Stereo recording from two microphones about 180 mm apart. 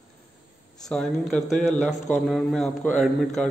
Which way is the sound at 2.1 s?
Centre (ahead or behind).